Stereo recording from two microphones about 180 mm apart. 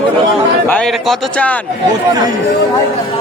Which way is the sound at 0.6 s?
5° left (ahead or behind).